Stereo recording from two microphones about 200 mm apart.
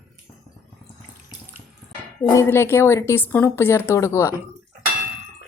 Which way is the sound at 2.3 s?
10° left (ahead or behind).